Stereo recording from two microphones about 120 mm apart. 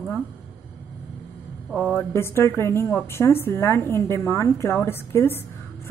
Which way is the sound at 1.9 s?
20° left (ahead or behind).